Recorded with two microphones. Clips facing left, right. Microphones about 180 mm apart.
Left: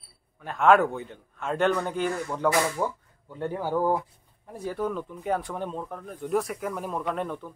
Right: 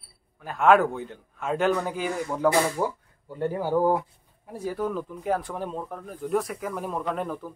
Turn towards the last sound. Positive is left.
turn(degrees=0)  # may be behind; listen again after turning